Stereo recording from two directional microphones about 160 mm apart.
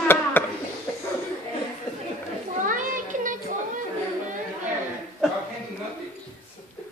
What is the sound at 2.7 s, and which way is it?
Children playing, 55° right (ahead or behind).